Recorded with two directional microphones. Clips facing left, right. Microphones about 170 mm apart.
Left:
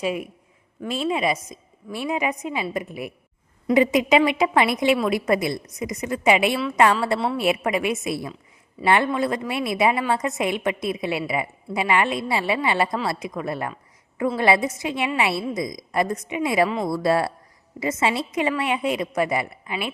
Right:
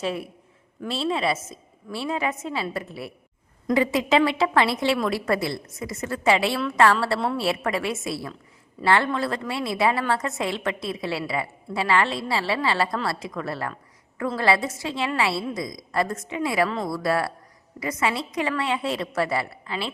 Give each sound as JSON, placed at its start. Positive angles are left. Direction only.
{"t": 0.0, "sound": "a woman's voice", "side_deg": 10}